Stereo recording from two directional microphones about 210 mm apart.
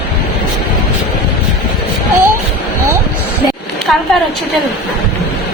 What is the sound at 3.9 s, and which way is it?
Speech, centre (ahead or behind).